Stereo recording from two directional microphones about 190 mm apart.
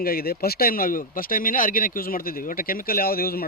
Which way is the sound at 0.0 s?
50° left (ahead or behind).